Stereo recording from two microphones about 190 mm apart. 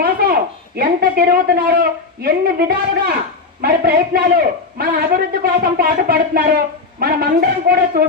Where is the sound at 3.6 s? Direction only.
55° right (ahead or behind).